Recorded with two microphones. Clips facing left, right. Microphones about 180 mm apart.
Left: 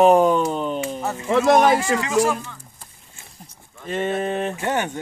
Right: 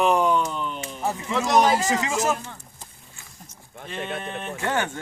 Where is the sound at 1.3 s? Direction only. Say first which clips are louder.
Left 5 dB; 55° left (ahead or behind).